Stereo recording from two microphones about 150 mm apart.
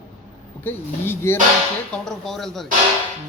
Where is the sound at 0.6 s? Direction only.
15° left (ahead or behind).